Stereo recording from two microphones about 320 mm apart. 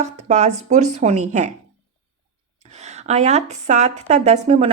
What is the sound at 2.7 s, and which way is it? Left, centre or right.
A woman's voice, right.